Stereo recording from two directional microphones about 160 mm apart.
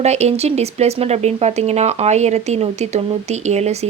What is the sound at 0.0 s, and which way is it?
Speech, 45° right (ahead or behind).